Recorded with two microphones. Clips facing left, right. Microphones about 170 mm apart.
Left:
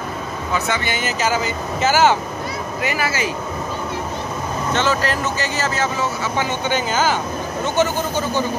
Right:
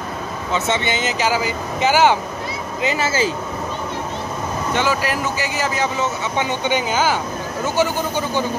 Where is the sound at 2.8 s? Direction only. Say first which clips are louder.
Right 3 dB; 25° right (ahead or behind).